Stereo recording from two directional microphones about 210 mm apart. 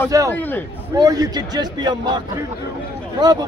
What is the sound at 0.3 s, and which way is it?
Speech, 10° left (ahead or behind).